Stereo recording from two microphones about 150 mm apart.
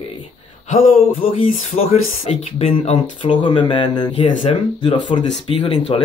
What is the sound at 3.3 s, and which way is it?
Speech, 30° left (ahead or behind).